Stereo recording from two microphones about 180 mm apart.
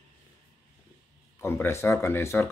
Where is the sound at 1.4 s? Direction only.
15° left (ahead or behind).